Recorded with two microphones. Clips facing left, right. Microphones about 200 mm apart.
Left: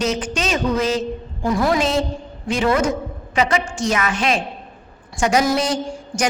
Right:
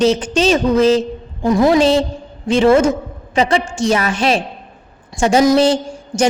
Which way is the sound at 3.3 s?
30° right (ahead or behind).